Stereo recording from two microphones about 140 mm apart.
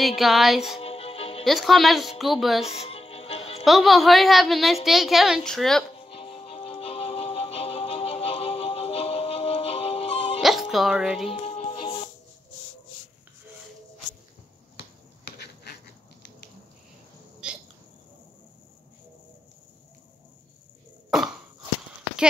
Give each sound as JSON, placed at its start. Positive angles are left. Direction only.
{"t": 0.0, "sound": "a woman's voice", "side_deg": 0}
{"t": 0.7, "sound": "music", "side_deg": 45}
{"t": 1.4, "sound": "a woman's voice", "side_deg": 0}
{"t": 2.8, "sound": "music", "side_deg": 45}
{"t": 3.6, "sound": "a woman's voice", "side_deg": 0}
{"t": 5.9, "sound": "music", "side_deg": 40}
{"t": 10.4, "sound": "speech", "side_deg": 0}
{"t": 11.2, "sound": "music", "side_deg": 45}
{"t": 17.4, "sound": "hiccup", "side_deg": -5}
{"t": 21.1, "sound": "cough", "side_deg": 0}